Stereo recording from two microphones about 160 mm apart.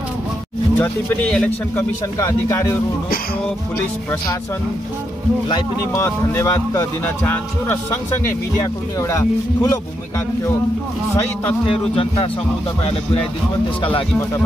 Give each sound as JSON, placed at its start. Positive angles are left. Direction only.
{"t": 0.7, "sound": "speech", "side_deg": 5}
{"t": 2.1, "sound": "speech", "side_deg": 20}
{"t": 6.0, "sound": "speech", "side_deg": 20}
{"t": 9.0, "sound": "speech", "side_deg": 20}
{"t": 11.7, "sound": "speech", "side_deg": 35}